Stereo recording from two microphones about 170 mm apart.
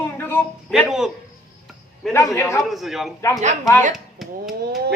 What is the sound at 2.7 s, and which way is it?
Speech, centre (ahead or behind).